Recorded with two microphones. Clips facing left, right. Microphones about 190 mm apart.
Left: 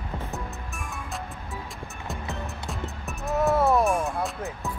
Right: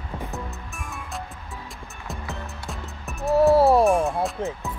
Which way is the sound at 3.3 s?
35° right (ahead or behind).